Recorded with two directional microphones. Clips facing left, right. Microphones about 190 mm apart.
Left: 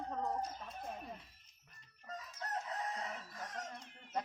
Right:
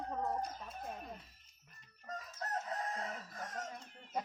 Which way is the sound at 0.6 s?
Centre (ahead or behind).